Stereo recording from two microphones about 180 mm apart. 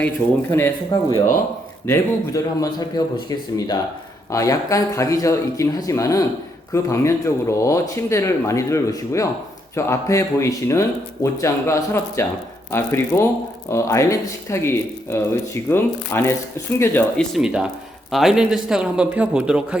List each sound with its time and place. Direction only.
0.9 s speech: 25° left (ahead or behind)
17.3 s speech: 5° right (ahead or behind)